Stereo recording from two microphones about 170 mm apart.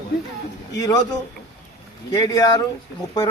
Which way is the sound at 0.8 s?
20° left (ahead or behind).